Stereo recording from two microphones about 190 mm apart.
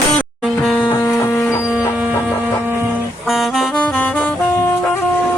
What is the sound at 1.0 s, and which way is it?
Music, 15° left (ahead or behind).